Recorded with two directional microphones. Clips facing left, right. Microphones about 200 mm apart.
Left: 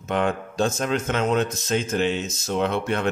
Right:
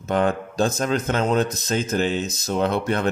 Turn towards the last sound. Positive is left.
turn(degrees=-40)  # may be behind; listen again after turning